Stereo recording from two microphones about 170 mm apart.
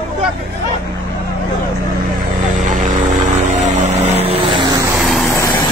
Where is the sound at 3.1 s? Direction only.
45° right (ahead or behind).